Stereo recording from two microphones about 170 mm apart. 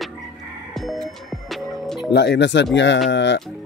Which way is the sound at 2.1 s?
90° left.